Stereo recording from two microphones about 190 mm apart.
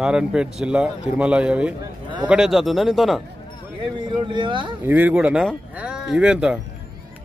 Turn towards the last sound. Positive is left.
turn(degrees=-5)  # may be behind; listen again after turning